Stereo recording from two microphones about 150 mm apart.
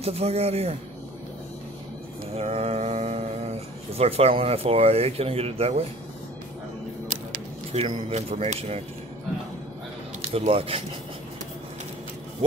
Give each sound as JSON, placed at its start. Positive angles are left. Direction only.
{"t": 0.0, "sound": "a man's voice", "side_deg": -40}
{"t": 2.3, "sound": "a sound", "side_deg": -40}
{"t": 7.7, "sound": "a man's voice", "side_deg": -45}
{"t": 10.2, "sound": "speech", "side_deg": -40}